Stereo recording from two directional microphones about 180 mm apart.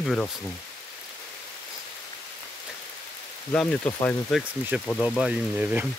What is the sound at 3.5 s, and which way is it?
Speech, 5° left (ahead or behind).